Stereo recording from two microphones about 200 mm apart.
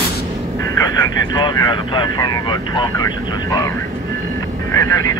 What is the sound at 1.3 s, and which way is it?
Vehicle, 20° left (ahead or behind).